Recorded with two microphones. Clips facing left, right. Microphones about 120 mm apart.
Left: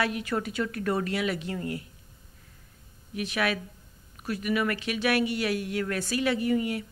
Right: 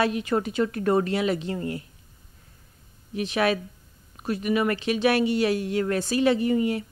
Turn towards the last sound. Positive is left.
turn(degrees=-30)  # may be behind; listen again after turning